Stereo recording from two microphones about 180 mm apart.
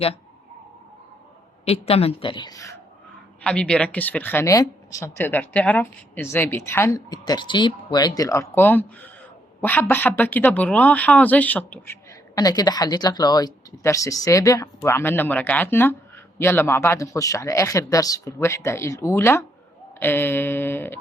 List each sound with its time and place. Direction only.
1.7 s a woman's voice: 35° left (ahead or behind); by 2.7 s 20° left (ahead or behind)
3.4 s speech: 5° left (ahead or behind)